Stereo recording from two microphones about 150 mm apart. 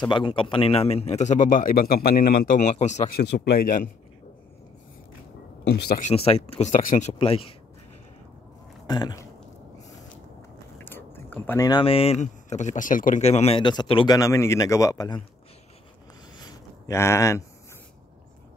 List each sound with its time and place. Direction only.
0.1 s a man's voice: 35° left (ahead or behind); by 2.7 s 60° left (ahead or behind)
2.7 s a man's voice: 50° left (ahead or behind)
3.2 s speech: 90° left; by 3.9 s 65° left (ahead or behind)
5.6 s speech: 90° left
6.0 s speech: 40° left (ahead or behind)
6.7 s speech: 60° left (ahead or behind)
7.1 s speech: 40° left (ahead or behind)
8.8 s speech: 25° left (ahead or behind)
10.8 s a sound: 15° left (ahead or behind)
11.8 s a man's voice: 40° left (ahead or behind)
13.6 s speech: 30° left (ahead or behind)
14.1 s a man's voice: 20° left (ahead or behind)
16.3 s a sound: 25° left (ahead or behind)